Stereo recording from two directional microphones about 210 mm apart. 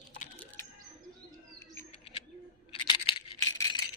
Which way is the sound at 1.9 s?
25° left (ahead or behind).